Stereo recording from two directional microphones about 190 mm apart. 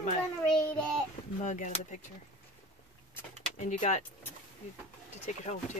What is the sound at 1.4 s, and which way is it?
Speech, 40° left (ahead or behind).